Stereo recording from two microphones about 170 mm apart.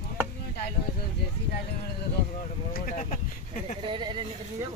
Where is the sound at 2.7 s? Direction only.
50° left (ahead or behind).